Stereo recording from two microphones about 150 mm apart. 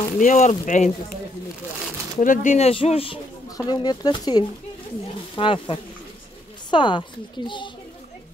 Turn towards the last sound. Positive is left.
turn(degrees=30)  # may be behind; listen again after turning